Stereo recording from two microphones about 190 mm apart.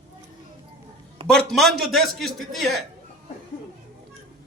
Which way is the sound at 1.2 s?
5° left (ahead or behind).